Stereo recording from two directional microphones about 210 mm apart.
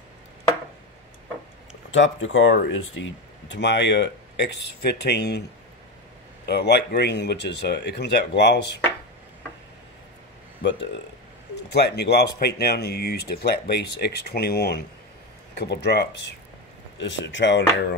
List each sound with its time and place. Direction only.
1.9 s speech: 65° left (ahead or behind)
6.4 s speech: 50° left (ahead or behind)
10.6 s speech: 60° left (ahead or behind)